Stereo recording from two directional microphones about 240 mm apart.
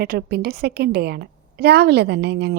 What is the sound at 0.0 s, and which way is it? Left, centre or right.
A woman's voice, right.